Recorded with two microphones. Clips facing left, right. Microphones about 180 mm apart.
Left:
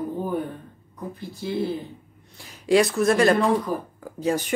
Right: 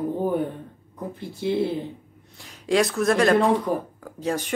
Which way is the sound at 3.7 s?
25° right (ahead or behind).